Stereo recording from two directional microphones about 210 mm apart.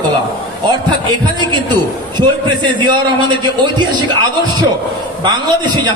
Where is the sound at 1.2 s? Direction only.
20° right (ahead or behind).